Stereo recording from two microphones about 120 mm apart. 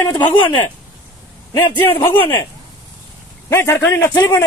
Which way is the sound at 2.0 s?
25° left (ahead or behind).